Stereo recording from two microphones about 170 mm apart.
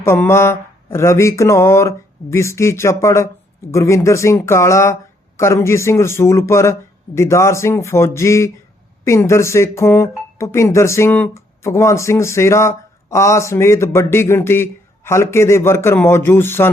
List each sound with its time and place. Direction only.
0.0 s speech: 15° left (ahead or behind)